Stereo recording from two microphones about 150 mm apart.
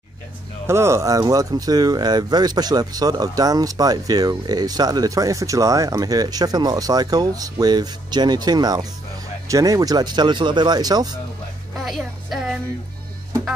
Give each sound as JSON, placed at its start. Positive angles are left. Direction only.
{"t": 0.7, "sound": "speech", "side_deg": -20}
{"t": 11.7, "sound": "music", "side_deg": 0}